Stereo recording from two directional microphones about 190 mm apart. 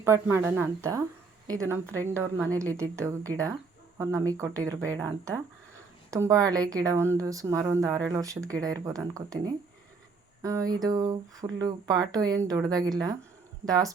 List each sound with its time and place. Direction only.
0.0 s a woman's voice: 15° right (ahead or behind)